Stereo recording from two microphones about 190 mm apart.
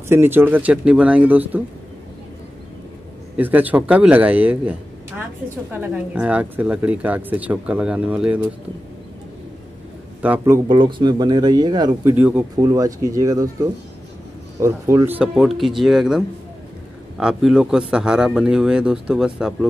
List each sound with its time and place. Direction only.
0.1 s speech: 10° right (ahead or behind)
3.3 s speech: 10° right (ahead or behind)
10.2 s speech: 10° right (ahead or behind)